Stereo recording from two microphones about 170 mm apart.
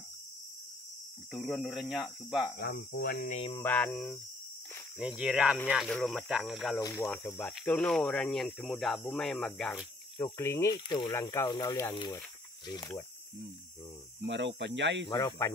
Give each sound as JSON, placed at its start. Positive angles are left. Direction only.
{"t": 1.3, "sound": "speech", "side_deg": 0}
{"t": 2.5, "sound": "speech", "side_deg": 70}
{"t": 3.3, "sound": "speech", "side_deg": 40}
{"t": 3.5, "sound": "speech", "side_deg": 10}
{"t": 4.9, "sound": "speech", "side_deg": -5}
{"t": 6.8, "sound": "speech", "side_deg": 20}
{"t": 7.1, "sound": "speech", "side_deg": 10}
{"t": 10.1, "sound": "speech", "side_deg": 20}
{"t": 14.2, "sound": "speech", "side_deg": -90}
{"t": 15.0, "sound": "speech", "side_deg": 20}